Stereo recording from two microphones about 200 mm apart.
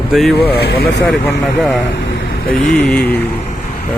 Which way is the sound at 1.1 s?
Centre (ahead or behind).